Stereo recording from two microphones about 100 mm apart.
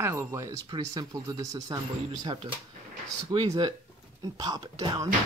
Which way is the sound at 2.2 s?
55° right (ahead or behind).